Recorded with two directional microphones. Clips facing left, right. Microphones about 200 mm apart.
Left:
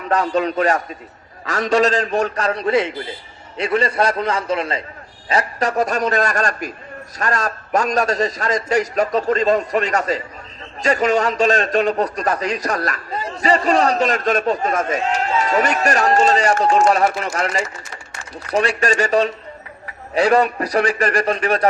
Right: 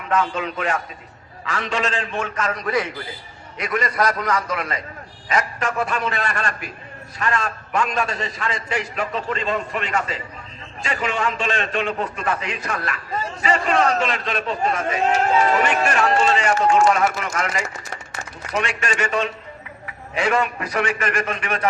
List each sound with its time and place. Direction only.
0.1 s a man's voice: 40° left (ahead or behind)